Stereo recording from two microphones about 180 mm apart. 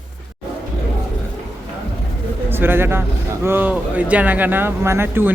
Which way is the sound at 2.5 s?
10° right (ahead or behind).